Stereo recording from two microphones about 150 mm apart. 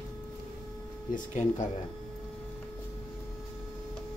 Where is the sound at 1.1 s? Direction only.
55° left (ahead or behind).